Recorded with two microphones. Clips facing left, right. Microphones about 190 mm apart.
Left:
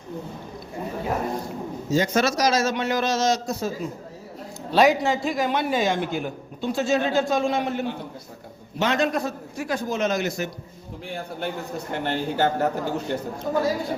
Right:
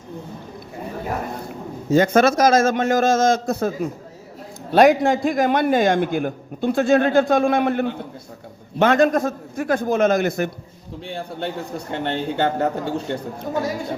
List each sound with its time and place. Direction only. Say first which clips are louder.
1.9 s a man's voice: right 7 dB; 55° right (ahead or behind)
4.7 s a man's voice: right 5 dB; 55° right (ahead or behind)
11.0 s a man's voice: right 2 dB; 25° right (ahead or behind)